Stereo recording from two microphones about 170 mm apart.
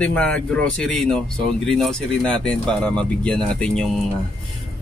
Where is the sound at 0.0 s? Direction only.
5° left (ahead or behind).